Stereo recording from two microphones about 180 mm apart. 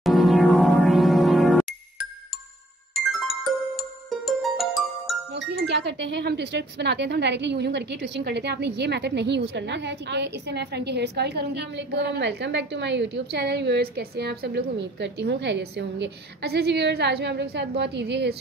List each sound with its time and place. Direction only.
0.0 s music: centre (ahead or behind)
2.9 s music: centre (ahead or behind)
5.3 s speech: 70° right (ahead or behind)